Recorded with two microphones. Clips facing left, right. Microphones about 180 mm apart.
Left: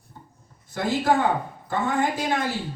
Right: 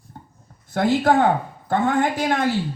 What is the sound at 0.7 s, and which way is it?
A woman's voice, 65° right (ahead or behind).